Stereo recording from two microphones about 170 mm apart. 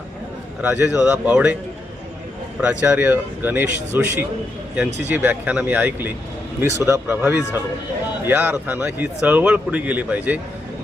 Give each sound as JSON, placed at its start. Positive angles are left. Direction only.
{"t": 0.6, "sound": "a man's voice", "side_deg": -10}
{"t": 2.6, "sound": "a man's voice", "side_deg": -10}